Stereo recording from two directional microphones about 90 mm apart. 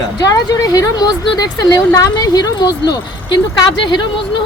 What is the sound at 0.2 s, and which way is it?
A woman's voice, 45° left (ahead or behind).